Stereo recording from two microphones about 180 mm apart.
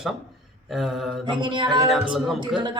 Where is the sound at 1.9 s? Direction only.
Centre (ahead or behind).